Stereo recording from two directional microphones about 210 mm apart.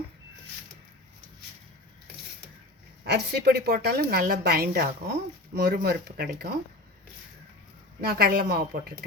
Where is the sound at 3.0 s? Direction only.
50° right (ahead or behind).